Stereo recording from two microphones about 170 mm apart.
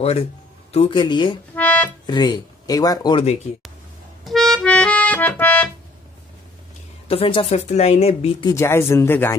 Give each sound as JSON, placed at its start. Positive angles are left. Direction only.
{"t": 0.7, "sound": "speech", "side_deg": 35}
{"t": 1.5, "sound": "music", "side_deg": 10}
{"t": 2.0, "sound": "speech", "side_deg": 25}
{"t": 4.2, "sound": "accordion", "side_deg": 0}
{"t": 7.1, "sound": "speech", "side_deg": 30}
{"t": 8.5, "sound": "speech", "side_deg": 15}